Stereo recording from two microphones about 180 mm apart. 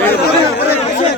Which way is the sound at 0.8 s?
35° left (ahead or behind).